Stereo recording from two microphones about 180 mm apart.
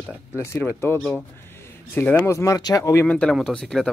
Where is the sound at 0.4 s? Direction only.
15° left (ahead or behind).